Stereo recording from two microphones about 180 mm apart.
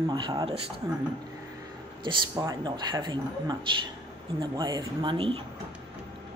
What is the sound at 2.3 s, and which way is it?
Speech, 20° right (ahead or behind).